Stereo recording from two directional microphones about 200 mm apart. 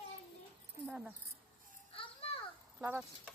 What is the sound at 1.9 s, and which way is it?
Children playing, 25° left (ahead or behind).